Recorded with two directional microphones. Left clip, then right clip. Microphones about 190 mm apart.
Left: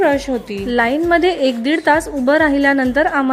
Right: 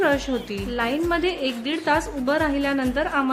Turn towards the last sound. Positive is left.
turn(degrees=30)  # may be behind; listen again after turning